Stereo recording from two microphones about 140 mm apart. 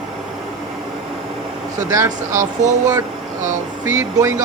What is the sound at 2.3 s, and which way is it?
Speech, 60° right (ahead or behind).